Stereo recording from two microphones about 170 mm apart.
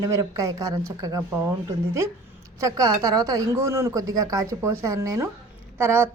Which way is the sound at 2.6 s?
20° right (ahead or behind).